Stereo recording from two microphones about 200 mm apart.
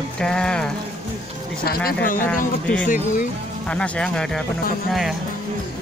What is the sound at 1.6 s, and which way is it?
Speech, 45° left (ahead or behind).